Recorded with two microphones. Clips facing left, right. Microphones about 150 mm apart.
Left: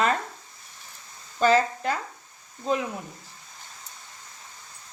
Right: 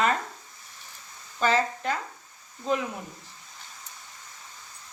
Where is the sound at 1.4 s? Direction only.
35° left (ahead or behind).